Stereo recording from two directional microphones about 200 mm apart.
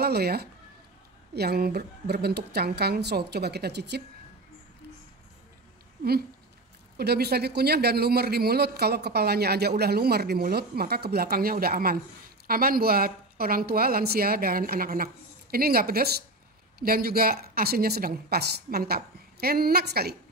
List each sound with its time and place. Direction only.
0.0 s a man's voice: 50° right (ahead or behind)
7.0 s a man's voice: 55° right (ahead or behind)